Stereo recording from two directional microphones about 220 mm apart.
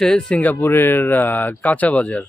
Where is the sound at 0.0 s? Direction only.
Centre (ahead or behind).